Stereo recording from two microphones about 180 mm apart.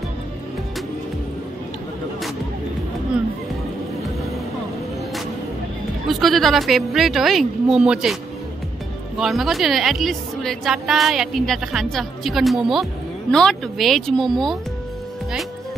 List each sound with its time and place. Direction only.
6.0 s a woman's voice: centre (ahead or behind)
9.2 s a woman's voice: centre (ahead or behind)